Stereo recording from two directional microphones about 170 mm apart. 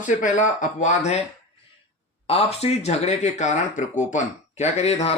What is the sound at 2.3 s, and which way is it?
Speech, 35° left (ahead or behind).